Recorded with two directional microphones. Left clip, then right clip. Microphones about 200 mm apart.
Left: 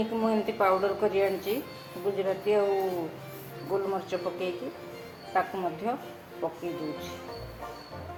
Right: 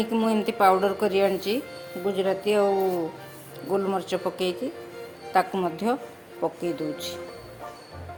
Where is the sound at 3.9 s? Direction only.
50° right (ahead or behind).